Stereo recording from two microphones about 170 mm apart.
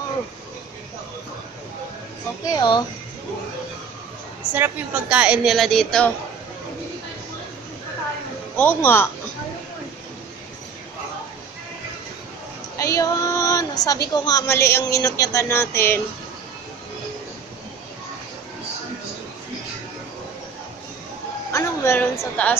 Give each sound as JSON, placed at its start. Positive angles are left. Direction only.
{"t": 2.4, "sound": "speech", "side_deg": 25}
{"t": 4.6, "sound": "a woman's voice", "side_deg": -10}
{"t": 8.5, "sound": "speech", "side_deg": 10}
{"t": 12.7, "sound": "a sound", "side_deg": 20}
{"t": 14.1, "sound": "speech", "side_deg": 20}
{"t": 21.5, "sound": "a woman's voice", "side_deg": 15}